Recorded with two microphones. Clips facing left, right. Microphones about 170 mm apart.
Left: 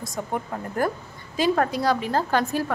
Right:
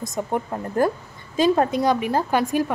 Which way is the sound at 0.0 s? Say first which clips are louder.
Right 4 dB; 20° right (ahead or behind).